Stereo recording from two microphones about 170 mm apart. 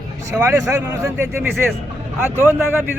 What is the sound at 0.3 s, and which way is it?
A man's voice, 15° right (ahead or behind).